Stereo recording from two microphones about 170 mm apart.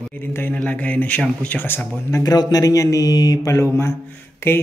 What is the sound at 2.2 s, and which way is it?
Mantra, 20° left (ahead or behind).